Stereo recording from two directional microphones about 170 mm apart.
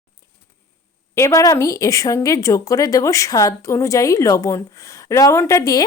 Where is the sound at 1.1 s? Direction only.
20° left (ahead or behind).